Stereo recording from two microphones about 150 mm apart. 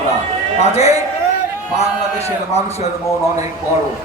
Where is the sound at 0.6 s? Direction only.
45° left (ahead or behind).